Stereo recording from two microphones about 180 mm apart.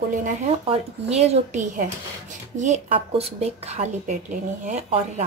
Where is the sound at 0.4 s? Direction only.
35° right (ahead or behind).